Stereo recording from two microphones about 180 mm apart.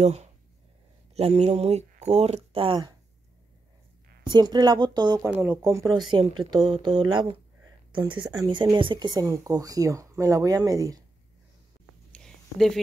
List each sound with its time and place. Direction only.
0.0 s speech: 35° right (ahead or behind)
4.2 s speech: 25° right (ahead or behind)
5.3 s speech: 10° right (ahead or behind)
6.1 s speech: 25° right (ahead or behind)
12.1 s a sound: 5° left (ahead or behind)